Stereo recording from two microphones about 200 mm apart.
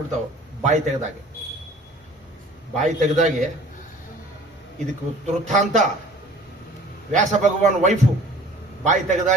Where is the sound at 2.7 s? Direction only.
35° right (ahead or behind).